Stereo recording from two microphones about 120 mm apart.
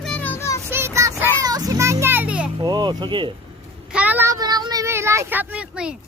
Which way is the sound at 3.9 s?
15° right (ahead or behind).